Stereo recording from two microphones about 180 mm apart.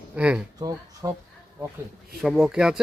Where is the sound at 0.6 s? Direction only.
20° right (ahead or behind).